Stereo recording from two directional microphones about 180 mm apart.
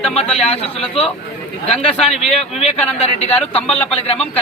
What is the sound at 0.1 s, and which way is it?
Speech, 35° left (ahead or behind).